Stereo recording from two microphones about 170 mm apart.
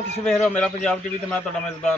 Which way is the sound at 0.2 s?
5° left (ahead or behind).